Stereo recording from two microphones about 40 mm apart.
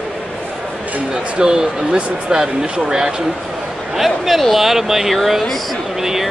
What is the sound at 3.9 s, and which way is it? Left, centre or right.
Speech, centre.